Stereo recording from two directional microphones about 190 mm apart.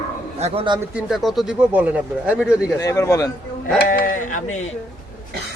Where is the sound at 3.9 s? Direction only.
45° left (ahead or behind).